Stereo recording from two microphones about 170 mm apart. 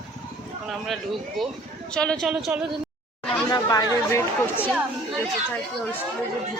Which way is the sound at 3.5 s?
25° left (ahead or behind).